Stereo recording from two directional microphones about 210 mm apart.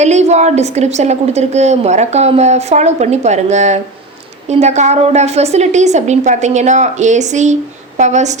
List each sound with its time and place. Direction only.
0.0 s a woman's voice: 35° right (ahead or behind)